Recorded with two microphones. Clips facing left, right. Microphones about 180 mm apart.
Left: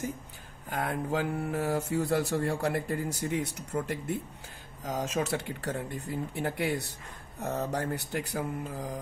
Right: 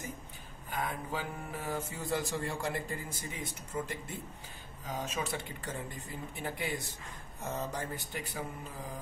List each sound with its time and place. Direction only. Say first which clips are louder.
0.7 s speech: left 6 dB; 85° left
1.9 s speech: left 7 dB; 70° left (ahead or behind)
4.8 s speech: left 6 dB; 85° left